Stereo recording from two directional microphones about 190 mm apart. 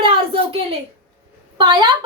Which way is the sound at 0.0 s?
30° right (ahead or behind).